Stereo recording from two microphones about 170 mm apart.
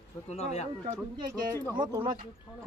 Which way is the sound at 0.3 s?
40° left (ahead or behind).